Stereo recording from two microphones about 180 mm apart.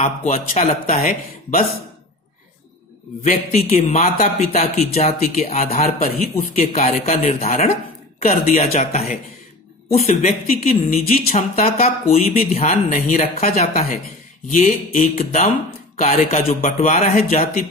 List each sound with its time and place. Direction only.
0.0 s speech: 40° left (ahead or behind)
3.3 s speech: 40° left (ahead or behind)
6.7 s speech: 40° left (ahead or behind)
10.4 s speech: 50° left (ahead or behind)
14.5 s speech: 50° left (ahead or behind)